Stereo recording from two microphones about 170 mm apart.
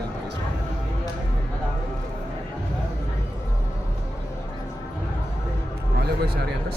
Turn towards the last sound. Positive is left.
turn(degrees=-70)  # may be behind; listen again after turning